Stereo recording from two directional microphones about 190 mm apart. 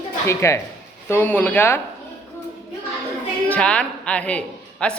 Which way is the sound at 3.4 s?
5° left (ahead or behind).